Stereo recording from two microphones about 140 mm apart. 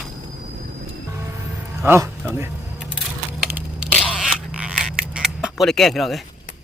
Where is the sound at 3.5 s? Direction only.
10° right (ahead or behind).